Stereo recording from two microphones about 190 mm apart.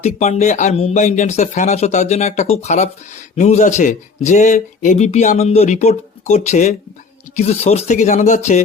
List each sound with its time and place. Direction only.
0.0 s speech: 35° left (ahead or behind)